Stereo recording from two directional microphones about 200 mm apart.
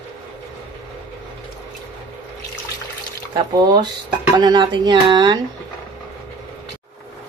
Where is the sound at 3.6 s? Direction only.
20° right (ahead or behind).